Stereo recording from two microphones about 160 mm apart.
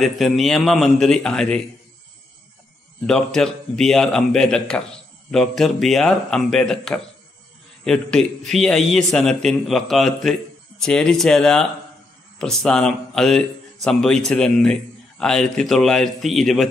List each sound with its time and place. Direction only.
0.0 s a man's voice: centre (ahead or behind)
3.1 s a man's voice: 5° left (ahead or behind)